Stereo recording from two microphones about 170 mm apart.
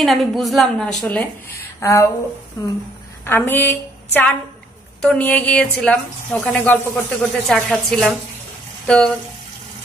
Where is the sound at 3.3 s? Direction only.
10° left (ahead or behind).